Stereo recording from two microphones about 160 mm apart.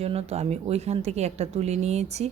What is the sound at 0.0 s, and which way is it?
A woman's voice, 40° right (ahead or behind).